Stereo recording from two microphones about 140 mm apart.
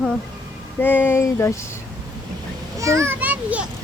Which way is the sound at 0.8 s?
15° left (ahead or behind).